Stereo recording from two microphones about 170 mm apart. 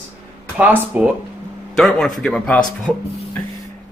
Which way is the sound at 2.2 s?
5° left (ahead or behind).